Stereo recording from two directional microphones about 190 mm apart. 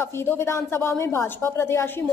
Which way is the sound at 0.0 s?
10° left (ahead or behind).